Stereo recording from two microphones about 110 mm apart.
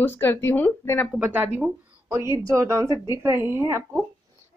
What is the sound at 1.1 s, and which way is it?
A woman's voice, 15° right (ahead or behind).